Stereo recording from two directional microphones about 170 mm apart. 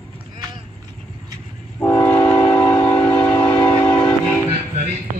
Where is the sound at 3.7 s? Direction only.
20° left (ahead or behind).